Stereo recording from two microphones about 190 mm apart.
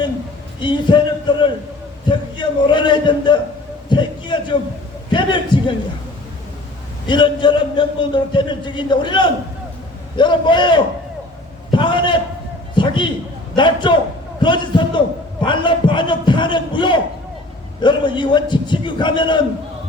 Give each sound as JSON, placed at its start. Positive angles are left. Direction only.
{"t": 0.6, "sound": "a man's voice", "side_deg": 25}
{"t": 7.1, "sound": "a man's voice", "side_deg": 25}
{"t": 11.7, "sound": "a sound", "side_deg": 25}
{"t": 13.6, "sound": "a man's voice", "side_deg": 25}